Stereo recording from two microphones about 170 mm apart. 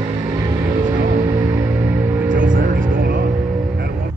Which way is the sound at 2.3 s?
50° right (ahead or behind).